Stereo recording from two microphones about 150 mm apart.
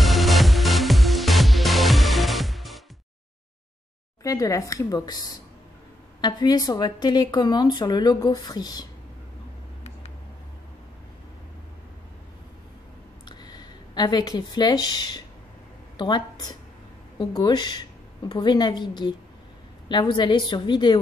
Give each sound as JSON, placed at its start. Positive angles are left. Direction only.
{"t": 0.0, "sound": "music", "side_deg": 0}
{"t": 4.2, "sound": "speech", "side_deg": 20}
{"t": 13.4, "sound": "a woman's voice", "side_deg": 30}